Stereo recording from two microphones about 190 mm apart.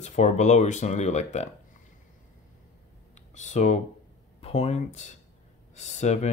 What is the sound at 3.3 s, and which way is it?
Speech, 40° left (ahead or behind).